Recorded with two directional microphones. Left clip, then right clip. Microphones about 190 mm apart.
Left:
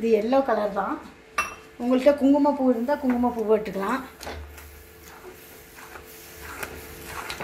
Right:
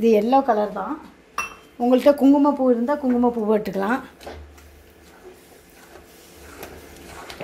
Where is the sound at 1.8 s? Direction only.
55° right (ahead or behind).